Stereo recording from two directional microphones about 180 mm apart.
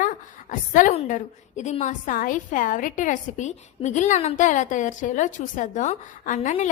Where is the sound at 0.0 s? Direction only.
45° left (ahead or behind).